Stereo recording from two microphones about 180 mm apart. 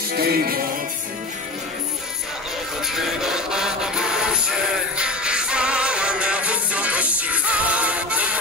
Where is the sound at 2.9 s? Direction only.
Centre (ahead or behind).